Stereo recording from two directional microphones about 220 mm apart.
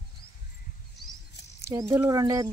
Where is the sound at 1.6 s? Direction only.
15° right (ahead or behind).